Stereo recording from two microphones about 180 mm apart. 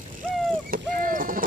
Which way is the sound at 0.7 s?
50° right (ahead or behind).